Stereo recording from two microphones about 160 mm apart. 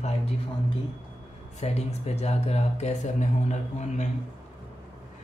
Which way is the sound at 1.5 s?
45° left (ahead or behind).